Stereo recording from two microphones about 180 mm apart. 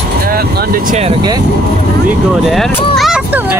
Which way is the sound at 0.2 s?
55° right (ahead or behind).